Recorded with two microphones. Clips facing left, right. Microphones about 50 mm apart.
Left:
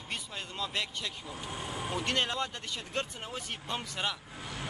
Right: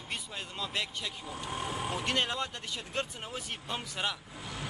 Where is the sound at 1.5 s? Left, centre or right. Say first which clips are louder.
Right 3 dB; right.